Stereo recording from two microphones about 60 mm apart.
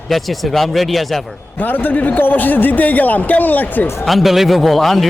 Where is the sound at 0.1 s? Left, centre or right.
Centre.